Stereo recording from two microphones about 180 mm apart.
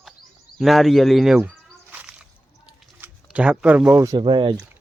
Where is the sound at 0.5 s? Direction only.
Centre (ahead or behind).